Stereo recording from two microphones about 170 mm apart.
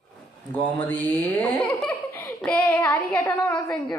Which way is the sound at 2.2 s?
15° left (ahead or behind).